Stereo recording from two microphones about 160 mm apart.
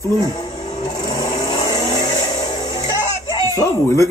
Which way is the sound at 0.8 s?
20° left (ahead or behind).